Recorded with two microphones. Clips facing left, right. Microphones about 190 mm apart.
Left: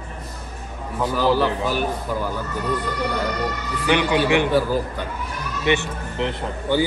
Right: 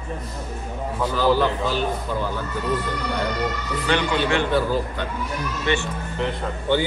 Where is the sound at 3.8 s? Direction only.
10° left (ahead or behind).